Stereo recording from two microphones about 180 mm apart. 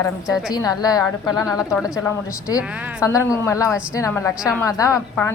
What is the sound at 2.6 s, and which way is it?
Speech, 10° right (ahead or behind).